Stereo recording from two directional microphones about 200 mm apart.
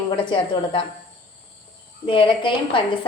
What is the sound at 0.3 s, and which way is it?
Speech, 25° left (ahead or behind).